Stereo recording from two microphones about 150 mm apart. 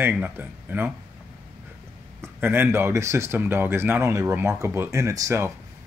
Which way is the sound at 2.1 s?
15° right (ahead or behind).